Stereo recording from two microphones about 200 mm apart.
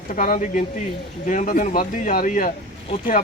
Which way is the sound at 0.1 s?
40° left (ahead or behind).